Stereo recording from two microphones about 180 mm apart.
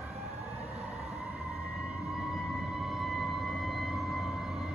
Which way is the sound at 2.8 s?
Centre (ahead or behind).